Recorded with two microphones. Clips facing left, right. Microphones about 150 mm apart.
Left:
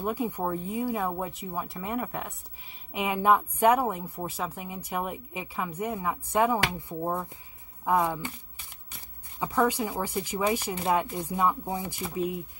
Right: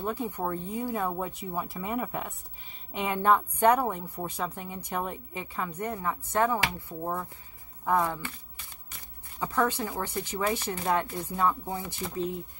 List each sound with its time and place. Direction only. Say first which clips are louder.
0.0 s a woman's voice: left 2 dB; 10° left (ahead or behind)
9.4 s a woman's voice: left 2 dB; 10° left (ahead or behind)